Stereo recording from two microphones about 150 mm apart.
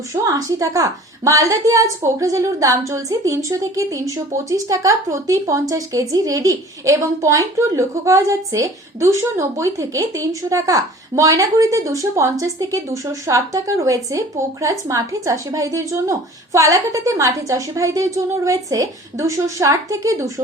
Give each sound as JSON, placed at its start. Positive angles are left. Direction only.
{"t": 0.1, "sound": "a woman's voice", "side_deg": -20}